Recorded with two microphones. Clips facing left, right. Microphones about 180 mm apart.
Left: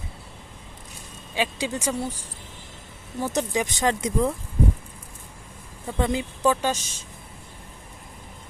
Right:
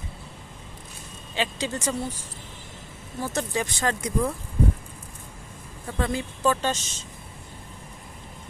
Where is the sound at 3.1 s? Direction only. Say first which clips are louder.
Left 3 dB; 15° left (ahead or behind).